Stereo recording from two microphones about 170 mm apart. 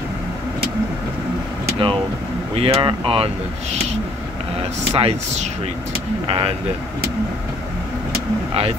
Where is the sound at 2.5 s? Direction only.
35° right (ahead or behind).